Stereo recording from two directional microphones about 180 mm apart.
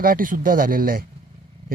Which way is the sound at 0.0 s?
50° right (ahead or behind).